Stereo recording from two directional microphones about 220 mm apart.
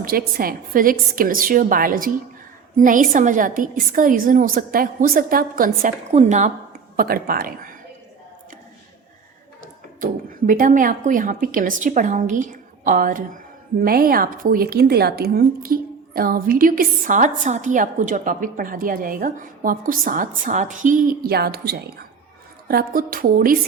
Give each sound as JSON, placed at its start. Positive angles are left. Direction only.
{"t": 0.0, "sound": "a woman's voice", "side_deg": -40}
{"t": 10.0, "sound": "a woman's voice", "side_deg": -40}